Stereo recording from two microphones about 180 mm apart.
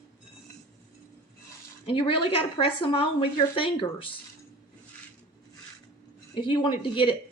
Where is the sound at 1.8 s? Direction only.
30° left (ahead or behind).